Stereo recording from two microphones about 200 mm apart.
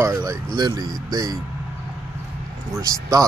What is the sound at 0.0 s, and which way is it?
Speech, 15° right (ahead or behind).